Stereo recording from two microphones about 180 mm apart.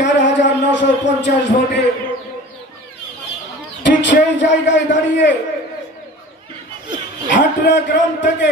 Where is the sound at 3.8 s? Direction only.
80° left.